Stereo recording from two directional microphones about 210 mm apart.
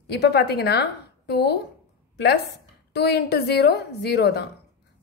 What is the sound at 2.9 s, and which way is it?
A woman's voice, 50° left (ahead or behind).